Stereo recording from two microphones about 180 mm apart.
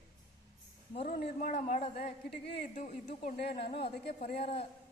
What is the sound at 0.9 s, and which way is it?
A woman's voice, 35° left (ahead or behind).